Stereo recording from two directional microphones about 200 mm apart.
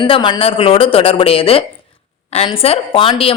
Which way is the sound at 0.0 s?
25° left (ahead or behind).